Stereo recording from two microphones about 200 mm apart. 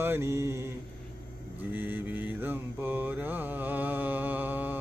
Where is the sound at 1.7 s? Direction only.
10° right (ahead or behind).